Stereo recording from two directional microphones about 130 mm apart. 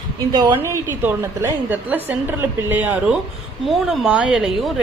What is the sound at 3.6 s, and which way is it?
Speech, centre (ahead or behind).